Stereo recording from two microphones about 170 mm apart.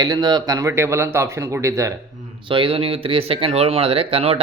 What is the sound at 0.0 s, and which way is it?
Speech, 25° right (ahead or behind).